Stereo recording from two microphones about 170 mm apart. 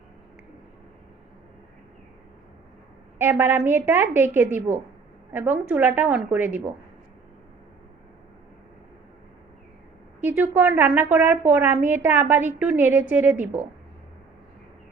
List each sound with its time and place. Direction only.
3.2 s a woman's voice: 10° right (ahead or behind)
10.2 s a woman's voice: 10° right (ahead or behind)